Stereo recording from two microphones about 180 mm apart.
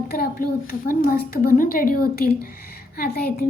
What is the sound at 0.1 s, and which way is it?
A woman's voice, 55° left (ahead or behind).